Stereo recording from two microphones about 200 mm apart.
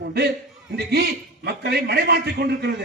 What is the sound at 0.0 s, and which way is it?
A man's voice, 55° right (ahead or behind).